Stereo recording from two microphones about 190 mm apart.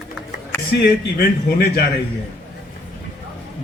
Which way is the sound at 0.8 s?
55° left (ahead or behind).